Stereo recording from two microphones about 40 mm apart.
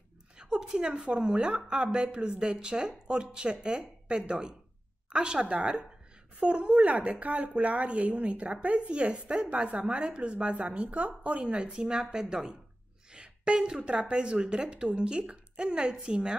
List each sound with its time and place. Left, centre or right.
0.4 s a woman's voice: right
13.1 s a sound: right
13.8 s speech: right